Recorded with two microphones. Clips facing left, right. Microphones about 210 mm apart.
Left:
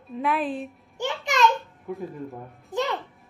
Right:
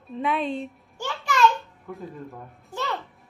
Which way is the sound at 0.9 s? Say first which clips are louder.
Left 1 dB; 20° left (ahead or behind).